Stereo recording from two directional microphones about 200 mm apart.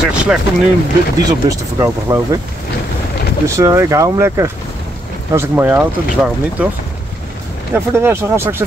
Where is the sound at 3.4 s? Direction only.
15° right (ahead or behind).